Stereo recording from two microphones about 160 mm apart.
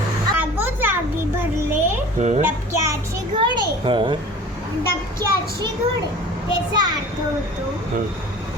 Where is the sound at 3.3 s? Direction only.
30° right (ahead or behind).